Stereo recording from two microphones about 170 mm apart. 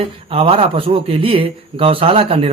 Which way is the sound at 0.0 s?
35° right (ahead or behind).